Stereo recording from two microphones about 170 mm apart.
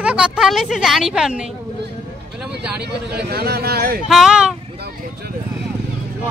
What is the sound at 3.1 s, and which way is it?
Speech, 70° right (ahead or behind).